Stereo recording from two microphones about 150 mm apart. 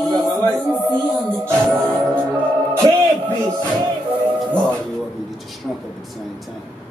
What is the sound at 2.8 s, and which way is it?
Speech, 30° right (ahead or behind).